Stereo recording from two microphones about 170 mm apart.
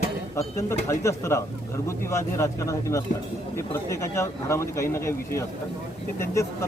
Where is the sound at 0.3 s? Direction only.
15° left (ahead or behind).